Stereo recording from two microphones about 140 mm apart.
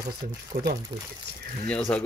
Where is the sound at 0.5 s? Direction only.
90° right.